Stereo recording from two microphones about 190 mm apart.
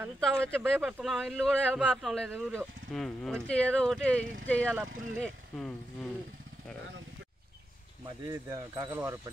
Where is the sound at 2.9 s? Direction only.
Centre (ahead or behind).